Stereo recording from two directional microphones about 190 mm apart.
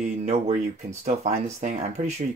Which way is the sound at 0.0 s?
35° right (ahead or behind).